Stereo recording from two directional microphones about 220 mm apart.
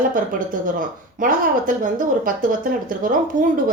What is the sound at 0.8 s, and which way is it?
A woman's voice, 35° right (ahead or behind).